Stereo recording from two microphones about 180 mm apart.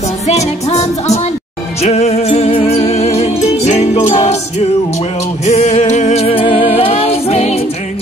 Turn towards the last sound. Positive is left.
turn(degrees=35)  # may be behind; listen again after turning